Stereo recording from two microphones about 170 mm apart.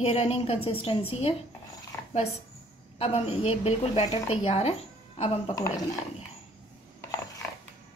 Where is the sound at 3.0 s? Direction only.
35° left (ahead or behind).